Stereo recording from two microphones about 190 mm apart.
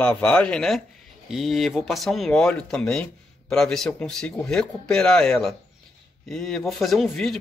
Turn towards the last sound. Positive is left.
turn(degrees=0)  # may be behind; listen again after turning